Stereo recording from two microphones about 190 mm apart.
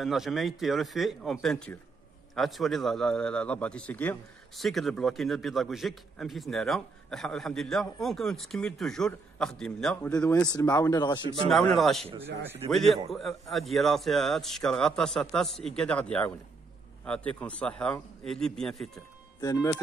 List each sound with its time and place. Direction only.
0.0 s a man's voice: centre (ahead or behind)
10.4 s speech: 20° left (ahead or behind)
11.4 s a man's voice: centre (ahead or behind)
12.2 s a man's voice: 10° right (ahead or behind)
12.7 s a man's voice: centre (ahead or behind)
19.4 s speech: 20° left (ahead or behind)